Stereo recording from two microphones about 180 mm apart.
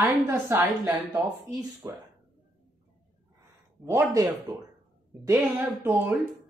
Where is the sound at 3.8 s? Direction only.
15° right (ahead or behind).